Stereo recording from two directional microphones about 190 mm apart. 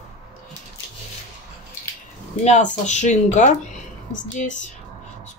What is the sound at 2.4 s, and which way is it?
Speech, 40° left (ahead or behind).